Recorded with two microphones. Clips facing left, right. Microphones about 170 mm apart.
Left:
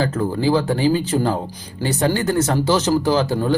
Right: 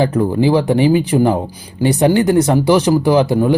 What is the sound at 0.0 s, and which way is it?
Speech, 15° right (ahead or behind).